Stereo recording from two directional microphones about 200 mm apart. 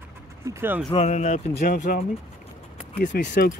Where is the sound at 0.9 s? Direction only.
35° left (ahead or behind).